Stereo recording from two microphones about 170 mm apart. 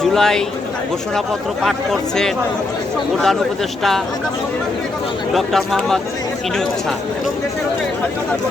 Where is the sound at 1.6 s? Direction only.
Centre (ahead or behind).